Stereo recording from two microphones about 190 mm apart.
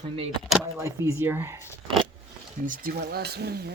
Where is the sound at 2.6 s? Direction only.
45° right (ahead or behind).